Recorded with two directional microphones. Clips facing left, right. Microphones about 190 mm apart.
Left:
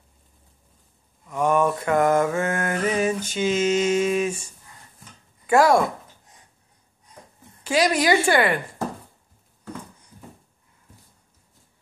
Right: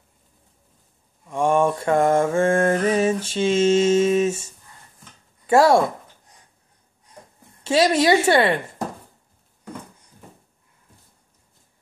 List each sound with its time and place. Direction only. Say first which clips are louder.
1.3 s mantra: right 2 dB; 25° right (ahead or behind)
7.6 s mantra: right 3 dB; 25° right (ahead or behind)
8.3 s speech: right 2 dB; 25° right (ahead or behind)